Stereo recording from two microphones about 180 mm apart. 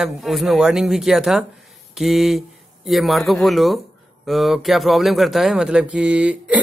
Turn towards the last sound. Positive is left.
turn(degrees=-5)  # may be behind; listen again after turning